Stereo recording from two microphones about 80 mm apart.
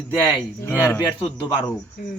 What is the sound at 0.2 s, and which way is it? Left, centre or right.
Speech, left.